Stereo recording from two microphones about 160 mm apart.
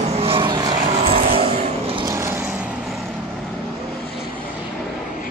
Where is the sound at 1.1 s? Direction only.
40° right (ahead or behind).